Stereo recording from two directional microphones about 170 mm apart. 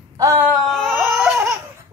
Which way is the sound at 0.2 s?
15° right (ahead or behind).